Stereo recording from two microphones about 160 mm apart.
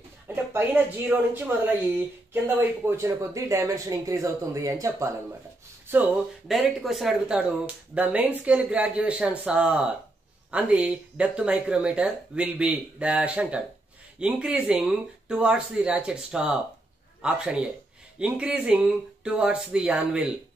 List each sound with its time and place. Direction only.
0.5 s speech: 15° right (ahead or behind)
6.4 s speech: centre (ahead or behind)